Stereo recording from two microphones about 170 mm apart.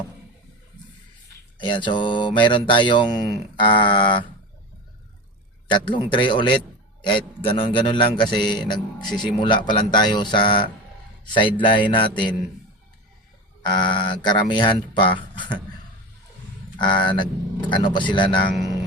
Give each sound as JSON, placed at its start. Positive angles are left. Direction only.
{"t": 1.5, "sound": "speech", "side_deg": 30}
{"t": 5.6, "sound": "speech", "side_deg": 30}
{"t": 13.6, "sound": "speech", "side_deg": 25}
{"t": 16.7, "sound": "speech", "side_deg": 25}